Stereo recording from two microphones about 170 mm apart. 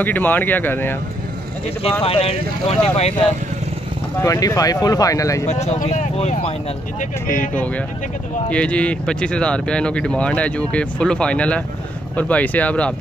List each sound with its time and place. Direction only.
0.0 s speech: 10° left (ahead or behind)
1.8 s speech: 35° left (ahead or behind)
4.2 s speech: 20° left (ahead or behind)
5.5 s speech: 40° left (ahead or behind)
7.2 s speech: 10° left (ahead or behind)